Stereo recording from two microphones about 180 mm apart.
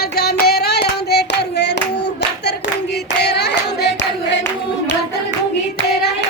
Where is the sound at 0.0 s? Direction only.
60° left (ahead or behind).